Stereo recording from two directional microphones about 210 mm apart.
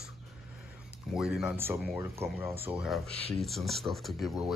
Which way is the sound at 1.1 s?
5° right (ahead or behind).